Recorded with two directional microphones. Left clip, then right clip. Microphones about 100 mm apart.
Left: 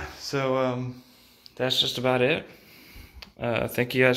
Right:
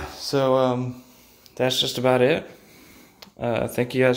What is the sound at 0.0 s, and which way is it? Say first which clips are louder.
Speech: right 6 dB; 70° right (ahead or behind).